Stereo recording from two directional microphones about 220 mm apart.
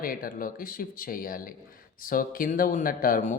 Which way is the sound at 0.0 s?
40° left (ahead or behind).